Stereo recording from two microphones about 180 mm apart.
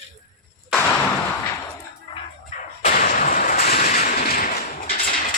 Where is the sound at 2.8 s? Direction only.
50° left (ahead or behind).